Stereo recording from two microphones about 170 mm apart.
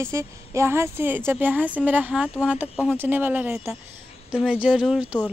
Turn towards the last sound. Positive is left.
turn(degrees=-5)  # may be behind; listen again after turning